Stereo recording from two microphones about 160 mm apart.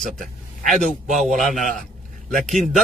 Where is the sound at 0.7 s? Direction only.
50° right (ahead or behind).